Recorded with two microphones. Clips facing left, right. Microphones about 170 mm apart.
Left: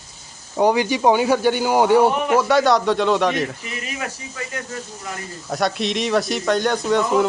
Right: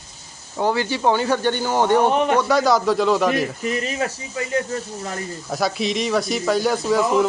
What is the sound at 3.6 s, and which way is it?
Speech, 35° right (ahead or behind).